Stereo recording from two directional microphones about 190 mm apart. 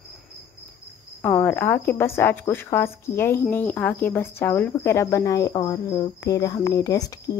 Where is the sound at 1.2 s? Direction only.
10° left (ahead or behind).